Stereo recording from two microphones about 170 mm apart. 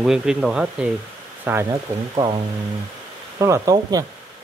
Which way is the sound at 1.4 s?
15° right (ahead or behind).